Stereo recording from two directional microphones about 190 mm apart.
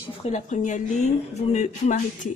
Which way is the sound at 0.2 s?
40° left (ahead or behind).